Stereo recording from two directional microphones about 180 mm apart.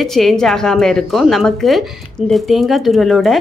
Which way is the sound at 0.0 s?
Centre (ahead or behind).